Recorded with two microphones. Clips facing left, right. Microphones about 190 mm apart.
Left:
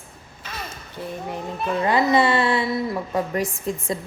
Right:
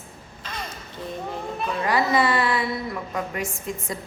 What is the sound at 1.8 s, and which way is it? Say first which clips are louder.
A woman's voice: left 3 dB; 25° left (ahead or behind).